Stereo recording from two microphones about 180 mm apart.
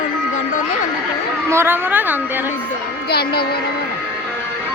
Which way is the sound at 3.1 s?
60° left (ahead or behind).